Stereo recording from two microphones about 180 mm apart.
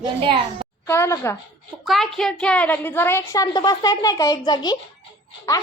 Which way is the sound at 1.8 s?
Centre (ahead or behind).